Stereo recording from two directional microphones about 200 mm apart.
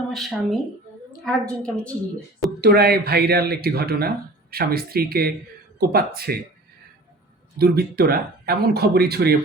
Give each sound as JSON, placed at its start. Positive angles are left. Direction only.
{"t": 0.1, "sound": "a woman's voice", "side_deg": 0}
{"t": 2.6, "sound": "speech", "side_deg": -50}
{"t": 7.6, "sound": "speech", "side_deg": -50}